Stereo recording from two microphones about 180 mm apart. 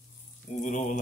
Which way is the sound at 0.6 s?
45° left (ahead or behind).